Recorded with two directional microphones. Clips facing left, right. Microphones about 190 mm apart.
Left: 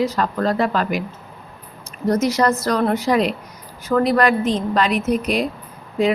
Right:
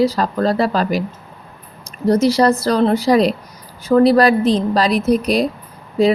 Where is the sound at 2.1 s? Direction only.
30° right (ahead or behind).